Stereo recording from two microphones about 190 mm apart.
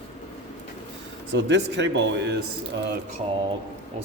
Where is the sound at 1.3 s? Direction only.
70° right (ahead or behind).